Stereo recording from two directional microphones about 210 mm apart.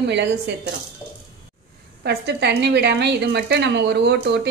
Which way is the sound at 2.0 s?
55° right (ahead or behind).